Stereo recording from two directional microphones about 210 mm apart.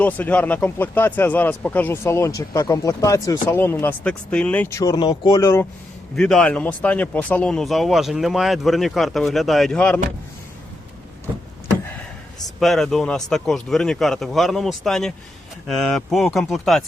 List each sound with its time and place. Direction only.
0.0 s speech: 5° left (ahead or behind)
6.1 s speech: 5° left (ahead or behind)
11.3 s a sound: 20° right (ahead or behind)
12.5 s speech: centre (ahead or behind)